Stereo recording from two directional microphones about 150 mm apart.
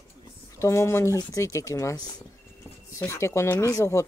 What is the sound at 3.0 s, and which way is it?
Speech, 20° left (ahead or behind).